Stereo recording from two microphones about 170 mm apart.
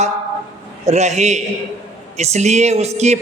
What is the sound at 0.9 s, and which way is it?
Speech, 40° right (ahead or behind).